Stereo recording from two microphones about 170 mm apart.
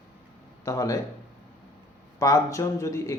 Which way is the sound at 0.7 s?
20° left (ahead or behind).